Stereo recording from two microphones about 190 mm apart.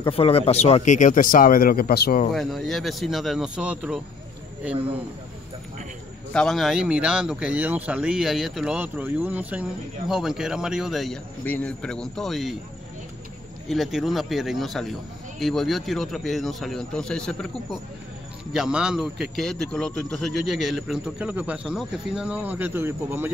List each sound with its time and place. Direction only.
0.0 s speech: 30° left (ahead or behind); by 2.2 s 55° left (ahead or behind)
2.3 s speech: centre (ahead or behind)
6.3 s speech: centre (ahead or behind)
13.7 s speech: centre (ahead or behind)